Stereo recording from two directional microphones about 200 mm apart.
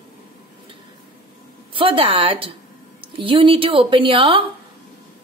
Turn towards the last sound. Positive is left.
turn(degrees=-25)  # may be behind; listen again after turning